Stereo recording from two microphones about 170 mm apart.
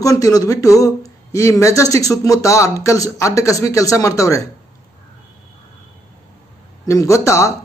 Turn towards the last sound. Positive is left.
turn(degrees=15)  # may be behind; listen again after turning